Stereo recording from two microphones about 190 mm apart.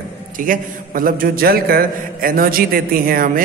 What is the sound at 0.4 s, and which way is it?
A man's voice, 45° right (ahead or behind).